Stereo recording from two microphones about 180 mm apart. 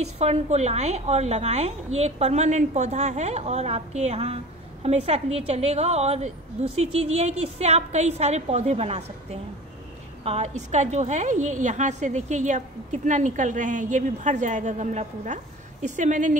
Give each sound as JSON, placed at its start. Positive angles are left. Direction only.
{"t": 0.2, "sound": "a woman's voice", "side_deg": -40}